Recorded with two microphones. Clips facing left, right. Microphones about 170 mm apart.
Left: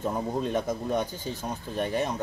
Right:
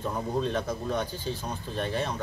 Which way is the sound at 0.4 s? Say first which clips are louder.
Right 1 dB; 15° left (ahead or behind).